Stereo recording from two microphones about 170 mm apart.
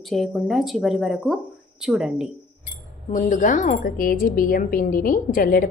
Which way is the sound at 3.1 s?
50° left (ahead or behind).